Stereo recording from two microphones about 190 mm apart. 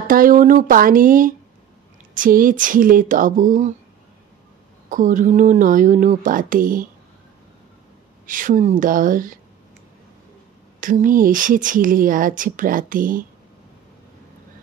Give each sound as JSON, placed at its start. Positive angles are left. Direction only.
{"t": 0.1, "sound": "speech", "side_deg": -45}
{"t": 4.8, "sound": "speech", "side_deg": -40}
{"t": 8.3, "sound": "speech", "side_deg": -45}
{"t": 10.8, "sound": "speech", "side_deg": -45}